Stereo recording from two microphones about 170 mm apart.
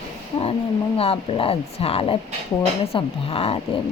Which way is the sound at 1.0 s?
35° left (ahead or behind).